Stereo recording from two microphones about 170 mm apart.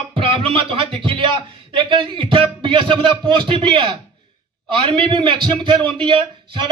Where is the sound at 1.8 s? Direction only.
30° right (ahead or behind).